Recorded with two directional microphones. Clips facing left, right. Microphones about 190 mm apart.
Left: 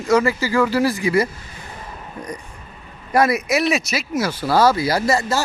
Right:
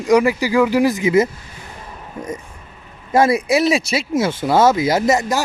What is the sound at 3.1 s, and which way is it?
Speech, 30° right (ahead or behind).